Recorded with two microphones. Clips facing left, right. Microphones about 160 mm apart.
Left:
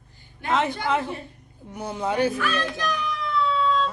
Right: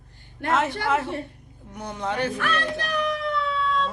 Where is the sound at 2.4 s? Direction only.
60° right (ahead or behind).